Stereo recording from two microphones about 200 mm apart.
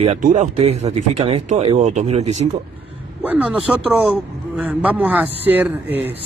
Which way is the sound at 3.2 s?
5° right (ahead or behind).